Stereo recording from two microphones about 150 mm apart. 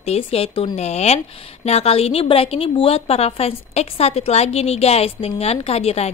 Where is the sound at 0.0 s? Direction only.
45° left (ahead or behind).